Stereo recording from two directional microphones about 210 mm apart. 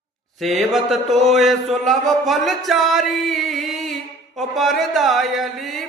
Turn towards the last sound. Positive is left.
turn(degrees=0)  # may be behind; listen again after turning